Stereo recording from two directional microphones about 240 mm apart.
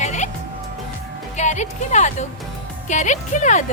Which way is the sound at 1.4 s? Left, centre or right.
Left.